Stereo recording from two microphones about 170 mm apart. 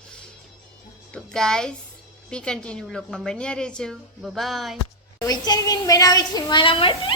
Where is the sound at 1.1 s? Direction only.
5° left (ahead or behind).